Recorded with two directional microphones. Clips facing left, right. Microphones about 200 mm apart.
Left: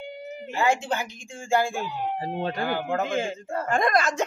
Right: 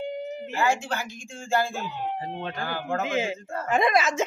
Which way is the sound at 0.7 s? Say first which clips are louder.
Left 3 dB; 15° left (ahead or behind).